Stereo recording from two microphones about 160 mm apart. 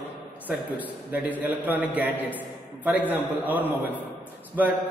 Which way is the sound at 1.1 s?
10° right (ahead or behind).